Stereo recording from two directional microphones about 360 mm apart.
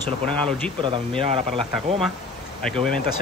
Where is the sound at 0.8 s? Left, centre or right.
Centre.